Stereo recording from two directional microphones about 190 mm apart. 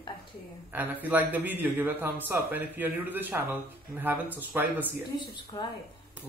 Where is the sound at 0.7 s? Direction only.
10° right (ahead or behind).